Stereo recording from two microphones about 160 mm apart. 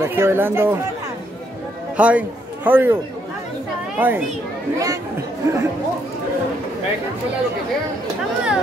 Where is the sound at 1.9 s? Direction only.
10° right (ahead or behind).